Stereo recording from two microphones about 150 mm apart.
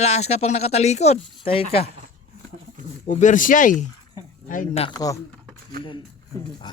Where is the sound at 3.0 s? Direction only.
55° left (ahead or behind).